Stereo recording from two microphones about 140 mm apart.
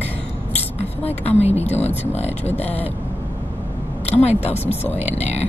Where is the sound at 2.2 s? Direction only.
10° left (ahead or behind).